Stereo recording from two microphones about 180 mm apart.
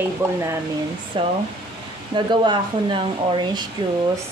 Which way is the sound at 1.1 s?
30° right (ahead or behind).